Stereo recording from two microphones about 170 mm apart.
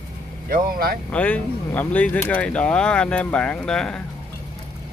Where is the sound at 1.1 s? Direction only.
10° left (ahead or behind).